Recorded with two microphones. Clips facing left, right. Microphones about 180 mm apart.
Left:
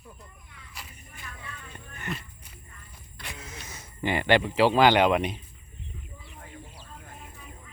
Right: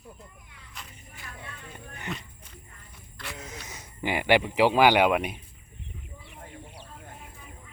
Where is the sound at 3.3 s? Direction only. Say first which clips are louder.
Right 3 dB; 20° right (ahead or behind).